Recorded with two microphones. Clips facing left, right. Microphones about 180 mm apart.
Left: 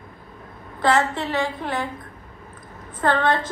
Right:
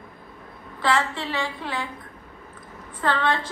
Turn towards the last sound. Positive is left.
turn(degrees=45)  # may be behind; listen again after turning